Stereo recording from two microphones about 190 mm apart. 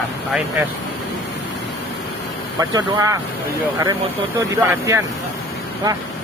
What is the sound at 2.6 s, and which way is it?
Speech, 20° right (ahead or behind).